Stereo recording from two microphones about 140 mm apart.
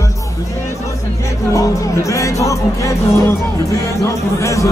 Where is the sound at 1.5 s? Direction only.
25° left (ahead or behind).